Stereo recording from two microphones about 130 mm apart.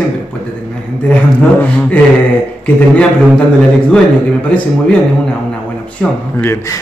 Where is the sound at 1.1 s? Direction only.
10° left (ahead or behind).